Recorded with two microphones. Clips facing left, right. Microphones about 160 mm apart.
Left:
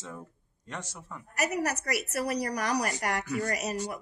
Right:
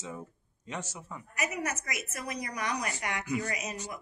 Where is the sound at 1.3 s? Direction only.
40° left (ahead or behind).